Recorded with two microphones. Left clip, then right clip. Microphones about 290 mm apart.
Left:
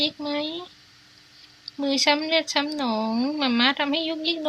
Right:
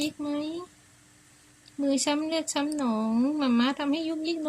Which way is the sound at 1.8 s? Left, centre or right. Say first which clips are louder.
Left 5 dB; centre.